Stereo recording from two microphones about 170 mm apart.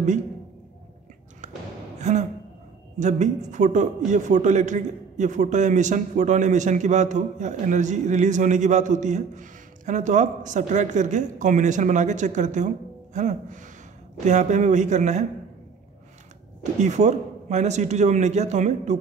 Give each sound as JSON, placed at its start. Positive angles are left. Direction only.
{"t": 2.0, "sound": "a sound", "side_deg": -45}
{"t": 3.0, "sound": "a man's voice", "side_deg": -45}
{"t": 16.8, "sound": "a man's voice", "side_deg": -45}